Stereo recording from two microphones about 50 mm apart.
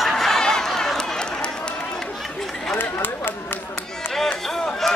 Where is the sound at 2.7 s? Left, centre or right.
Left.